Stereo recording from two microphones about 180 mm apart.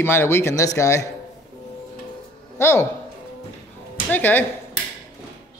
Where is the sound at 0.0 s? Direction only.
10° left (ahead or behind).